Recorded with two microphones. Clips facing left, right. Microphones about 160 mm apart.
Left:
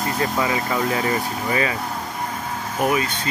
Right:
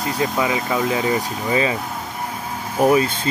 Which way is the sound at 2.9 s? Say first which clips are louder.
Right 7 dB; 30° right (ahead or behind).